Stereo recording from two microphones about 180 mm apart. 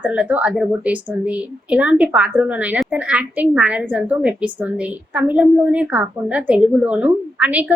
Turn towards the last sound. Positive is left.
turn(degrees=-10)  # may be behind; listen again after turning